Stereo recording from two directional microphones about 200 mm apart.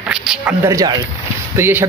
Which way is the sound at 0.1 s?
5° right (ahead or behind).